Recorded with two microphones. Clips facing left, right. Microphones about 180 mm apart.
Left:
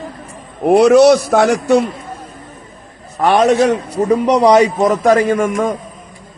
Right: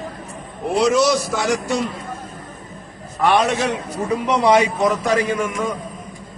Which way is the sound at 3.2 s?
40° left (ahead or behind).